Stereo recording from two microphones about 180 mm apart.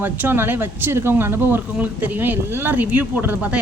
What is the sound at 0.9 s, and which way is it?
Speech, 15° right (ahead or behind).